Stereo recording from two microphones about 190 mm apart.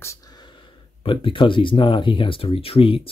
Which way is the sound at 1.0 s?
25° left (ahead or behind).